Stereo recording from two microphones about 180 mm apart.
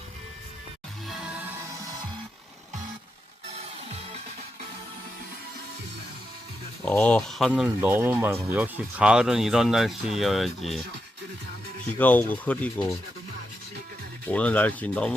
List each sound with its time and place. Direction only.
1.0 s music: centre (ahead or behind)
3.6 s music: 40° right (ahead or behind)
6.8 s speech: 5° left (ahead or behind)
11.9 s rub: 10° left (ahead or behind)
14.3 s rub: 10° left (ahead or behind)